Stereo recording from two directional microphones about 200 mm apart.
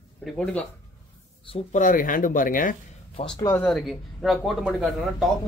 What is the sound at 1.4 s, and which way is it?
Speech, 35° left (ahead or behind).